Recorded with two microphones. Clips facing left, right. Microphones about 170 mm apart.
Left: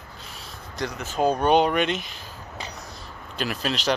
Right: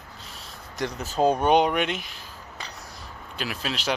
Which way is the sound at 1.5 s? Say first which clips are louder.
Left 1 dB; 15° right (ahead or behind).